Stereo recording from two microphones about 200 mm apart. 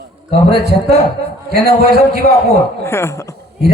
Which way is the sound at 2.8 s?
15° left (ahead or behind).